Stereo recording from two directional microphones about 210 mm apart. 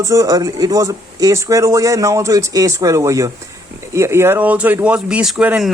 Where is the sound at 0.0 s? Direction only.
15° right (ahead or behind).